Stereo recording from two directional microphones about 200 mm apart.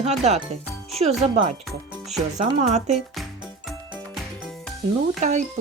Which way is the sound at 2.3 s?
35° right (ahead or behind).